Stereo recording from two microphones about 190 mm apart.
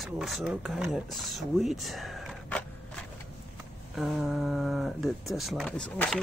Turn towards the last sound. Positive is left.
turn(degrees=5)  # may be behind; listen again after turning